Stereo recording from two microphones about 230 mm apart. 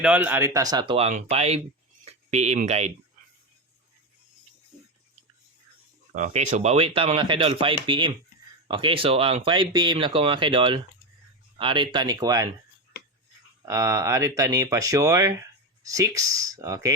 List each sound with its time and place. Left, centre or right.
0.0 s speech: centre; by 2.9 s right
6.1 s speech: right; by 12.5 s centre
13.6 s speech: centre